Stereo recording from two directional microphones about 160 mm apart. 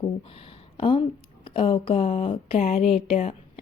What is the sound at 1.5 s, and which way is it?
A woman's voice, 30° left (ahead or behind).